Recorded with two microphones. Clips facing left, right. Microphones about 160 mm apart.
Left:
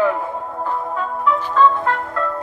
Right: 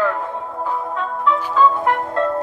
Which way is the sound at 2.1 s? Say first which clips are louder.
Right 4 dB; 30° right (ahead or behind).